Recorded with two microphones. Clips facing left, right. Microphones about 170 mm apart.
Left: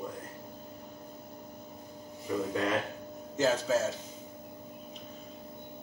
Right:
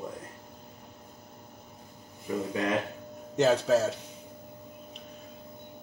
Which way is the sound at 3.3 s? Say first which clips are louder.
Right 4 dB; 70° right (ahead or behind).